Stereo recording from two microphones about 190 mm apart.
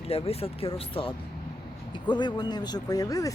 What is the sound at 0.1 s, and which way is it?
Speech, 30° left (ahead or behind).